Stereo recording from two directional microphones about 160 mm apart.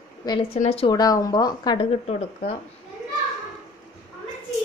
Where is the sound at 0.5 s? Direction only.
45° left (ahead or behind).